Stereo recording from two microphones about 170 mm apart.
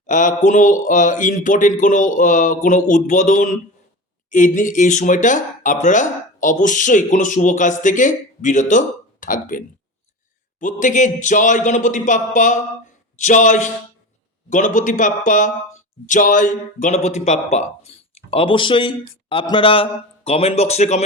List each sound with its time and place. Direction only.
0.1 s speech: 50° left (ahead or behind)